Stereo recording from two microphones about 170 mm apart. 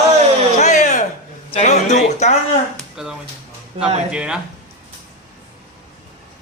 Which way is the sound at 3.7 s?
35° right (ahead or behind).